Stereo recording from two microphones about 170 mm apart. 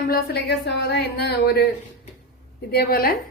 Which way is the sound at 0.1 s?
75° left (ahead or behind).